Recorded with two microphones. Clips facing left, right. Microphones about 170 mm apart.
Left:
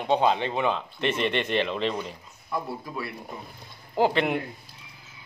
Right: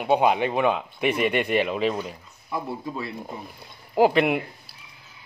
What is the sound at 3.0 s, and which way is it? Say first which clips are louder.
Speech: right 2 dB; 25° right (ahead or behind).